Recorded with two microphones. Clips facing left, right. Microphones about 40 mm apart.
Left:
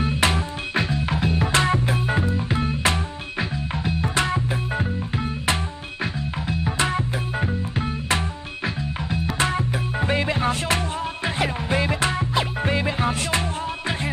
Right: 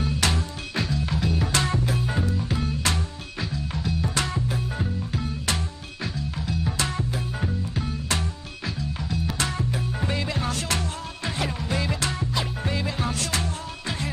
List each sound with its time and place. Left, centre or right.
0.0 s music: left